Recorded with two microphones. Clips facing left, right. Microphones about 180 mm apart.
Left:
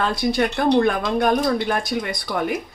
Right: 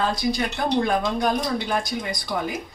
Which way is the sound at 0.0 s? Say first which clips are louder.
Left 3 dB; 60° left (ahead or behind).